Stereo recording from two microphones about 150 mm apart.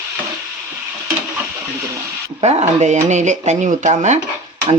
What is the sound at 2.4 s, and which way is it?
Speech, 45° right (ahead or behind).